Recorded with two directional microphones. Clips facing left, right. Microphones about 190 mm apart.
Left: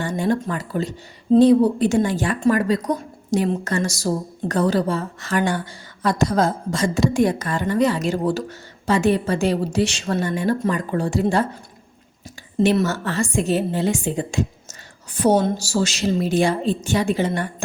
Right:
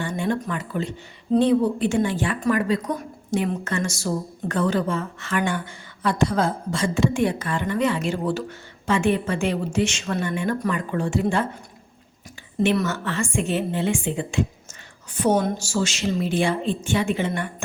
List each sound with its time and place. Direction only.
0.0 s a woman's voice: 40° left (ahead or behind)
12.5 s a woman's voice: 30° left (ahead or behind)